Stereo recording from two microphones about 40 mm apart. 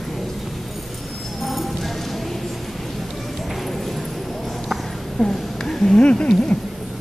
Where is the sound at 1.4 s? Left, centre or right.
Centre.